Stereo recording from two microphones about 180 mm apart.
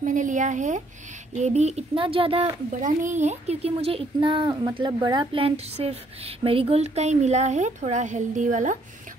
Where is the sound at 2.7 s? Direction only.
45° right (ahead or behind).